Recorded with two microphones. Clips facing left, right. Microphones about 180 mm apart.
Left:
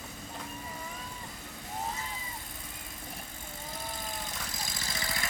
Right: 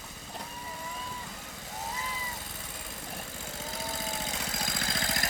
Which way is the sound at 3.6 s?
80° right.